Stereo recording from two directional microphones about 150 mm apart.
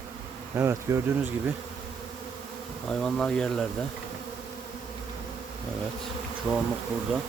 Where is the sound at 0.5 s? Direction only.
15° right (ahead or behind).